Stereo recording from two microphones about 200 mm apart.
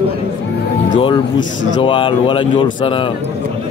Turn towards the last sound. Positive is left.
turn(degrees=25)  # may be behind; listen again after turning